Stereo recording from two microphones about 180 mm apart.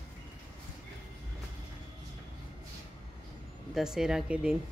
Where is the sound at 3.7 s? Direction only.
5° right (ahead or behind).